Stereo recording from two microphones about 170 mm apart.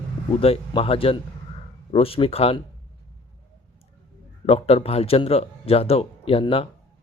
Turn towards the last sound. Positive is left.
turn(degrees=35)  # may be behind; listen again after turning